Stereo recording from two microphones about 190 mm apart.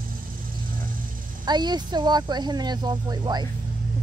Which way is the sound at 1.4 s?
20° right (ahead or behind).